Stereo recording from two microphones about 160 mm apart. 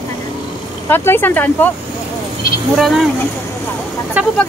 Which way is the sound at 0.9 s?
15° left (ahead or behind).